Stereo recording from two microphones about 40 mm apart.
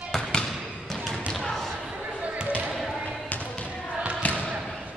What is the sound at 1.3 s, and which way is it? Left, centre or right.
Slam, centre.